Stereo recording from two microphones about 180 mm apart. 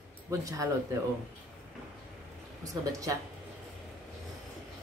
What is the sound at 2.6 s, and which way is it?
Speech, 20° right (ahead or behind).